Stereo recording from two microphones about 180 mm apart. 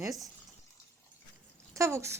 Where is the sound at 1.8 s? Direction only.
15° right (ahead or behind).